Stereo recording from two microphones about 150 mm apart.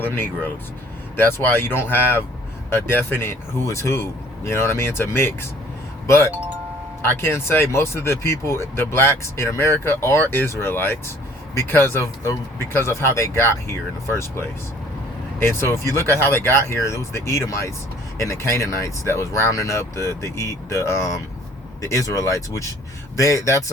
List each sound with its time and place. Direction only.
0.0 s speech: 15° left (ahead or behind)
7.0 s speech: 15° left (ahead or behind)